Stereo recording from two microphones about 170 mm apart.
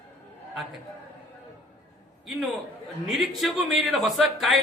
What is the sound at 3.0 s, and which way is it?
A man's voice, centre (ahead or behind).